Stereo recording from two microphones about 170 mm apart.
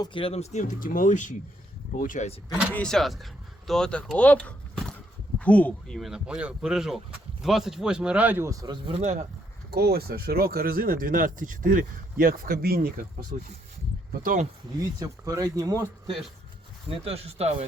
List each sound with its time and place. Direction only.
0.0 s speech: 30° left (ahead or behind)
2.5 s speech: 5° right (ahead or behind)
8.6 s speech: 25° right (ahead or behind)
9.0 s speech: 45° right (ahead or behind)
9.6 s speech: 65° right (ahead or behind)
13.3 s speech: 50° right (ahead or behind)
14.9 s speech: 20° right (ahead or behind)
17.0 s speech: 35° right (ahead or behind)